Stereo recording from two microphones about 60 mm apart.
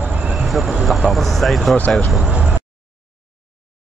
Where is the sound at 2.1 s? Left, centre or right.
Centre.